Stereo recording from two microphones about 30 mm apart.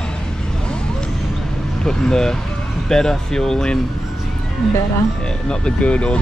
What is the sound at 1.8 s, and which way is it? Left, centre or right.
Vehicle, centre.